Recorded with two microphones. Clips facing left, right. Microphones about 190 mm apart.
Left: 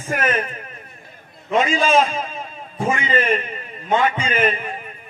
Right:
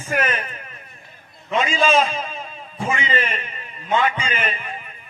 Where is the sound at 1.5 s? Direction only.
45° left (ahead or behind).